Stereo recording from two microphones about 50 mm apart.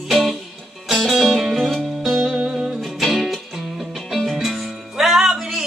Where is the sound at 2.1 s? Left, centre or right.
Centre.